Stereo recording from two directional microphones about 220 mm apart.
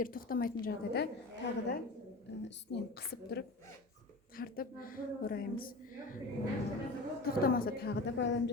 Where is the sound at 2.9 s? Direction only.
45° left (ahead or behind).